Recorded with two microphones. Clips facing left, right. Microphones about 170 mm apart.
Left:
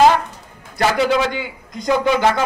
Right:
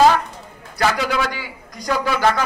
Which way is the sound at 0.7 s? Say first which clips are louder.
Left 4 dB; 25° left (ahead or behind).